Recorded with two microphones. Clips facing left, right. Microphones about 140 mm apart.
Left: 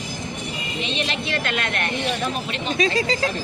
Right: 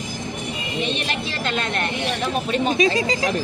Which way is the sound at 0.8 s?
45° right (ahead or behind).